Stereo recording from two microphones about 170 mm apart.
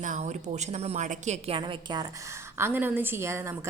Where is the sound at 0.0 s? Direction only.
45° right (ahead or behind).